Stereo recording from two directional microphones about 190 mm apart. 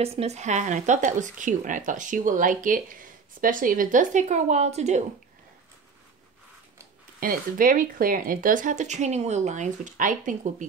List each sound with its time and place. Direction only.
0.0 s speech: 35° right (ahead or behind)
7.2 s speech: 45° right (ahead or behind)